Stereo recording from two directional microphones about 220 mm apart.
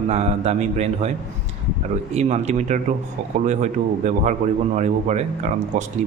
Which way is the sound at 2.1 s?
30° right (ahead or behind).